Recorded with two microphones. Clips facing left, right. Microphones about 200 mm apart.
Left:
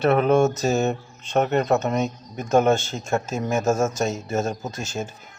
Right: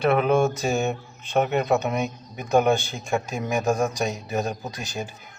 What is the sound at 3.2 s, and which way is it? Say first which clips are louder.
Speech: left 2 dB; 15° right (ahead or behind).